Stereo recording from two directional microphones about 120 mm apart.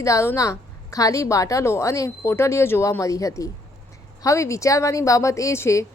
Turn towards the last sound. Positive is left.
turn(degrees=25)  # may be behind; listen again after turning